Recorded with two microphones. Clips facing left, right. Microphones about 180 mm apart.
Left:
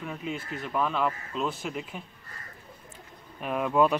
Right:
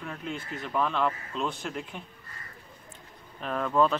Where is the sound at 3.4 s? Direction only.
10° left (ahead or behind).